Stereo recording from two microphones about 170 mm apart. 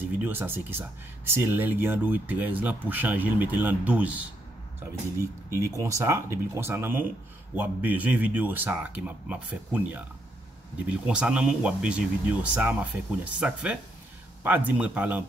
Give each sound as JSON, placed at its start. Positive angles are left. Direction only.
{"t": 0.0, "sound": "speech", "side_deg": -10}
{"t": 5.5, "sound": "speech", "side_deg": -20}